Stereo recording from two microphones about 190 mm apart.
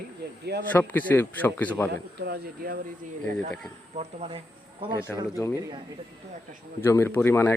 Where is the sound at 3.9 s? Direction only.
35° right (ahead or behind).